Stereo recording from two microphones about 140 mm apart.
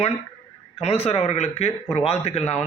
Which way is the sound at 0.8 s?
45° left (ahead or behind).